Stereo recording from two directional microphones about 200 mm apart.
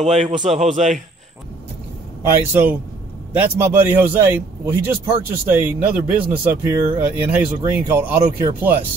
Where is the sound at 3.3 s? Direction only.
10° right (ahead or behind).